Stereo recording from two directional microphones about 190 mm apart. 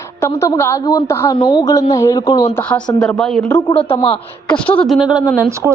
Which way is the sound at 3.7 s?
30° left (ahead or behind).